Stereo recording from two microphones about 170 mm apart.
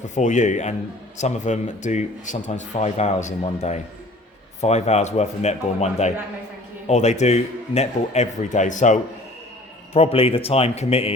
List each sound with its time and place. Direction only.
0.0 s speech: 45° left (ahead or behind)
9.9 s speech: 35° left (ahead or behind)